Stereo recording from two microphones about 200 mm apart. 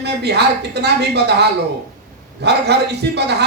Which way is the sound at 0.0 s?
55° right (ahead or behind).